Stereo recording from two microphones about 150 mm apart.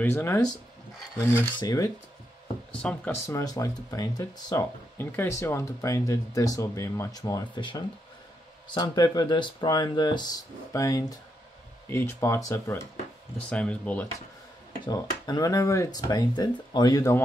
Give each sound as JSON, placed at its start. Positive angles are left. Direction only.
{"t": 0.0, "sound": "speech", "side_deg": 15}
{"t": 2.8, "sound": "speech", "side_deg": 5}
{"t": 3.3, "sound": "speech", "side_deg": 20}
{"t": 13.5, "sound": "speech", "side_deg": 10}
{"t": 14.9, "sound": "speech", "side_deg": 25}